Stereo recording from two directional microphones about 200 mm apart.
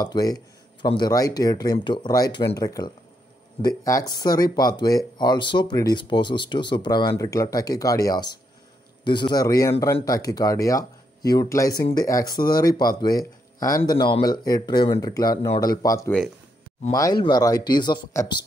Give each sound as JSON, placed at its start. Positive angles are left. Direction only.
{"t": 0.0, "sound": "a man's voice", "side_deg": 20}